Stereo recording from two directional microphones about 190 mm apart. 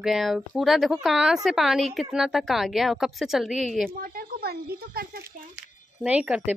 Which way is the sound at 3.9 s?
50° right (ahead or behind).